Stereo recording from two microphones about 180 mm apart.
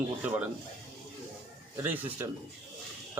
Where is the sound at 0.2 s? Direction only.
10° right (ahead or behind).